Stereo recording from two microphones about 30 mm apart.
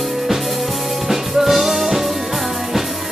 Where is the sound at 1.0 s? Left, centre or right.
Centre.